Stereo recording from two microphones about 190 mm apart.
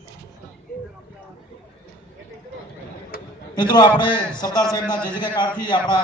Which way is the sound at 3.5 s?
20° left (ahead or behind).